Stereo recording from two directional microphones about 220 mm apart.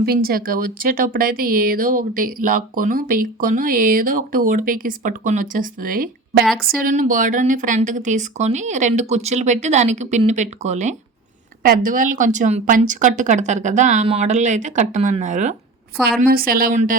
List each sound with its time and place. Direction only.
0.0 s speech: 45° right (ahead or behind)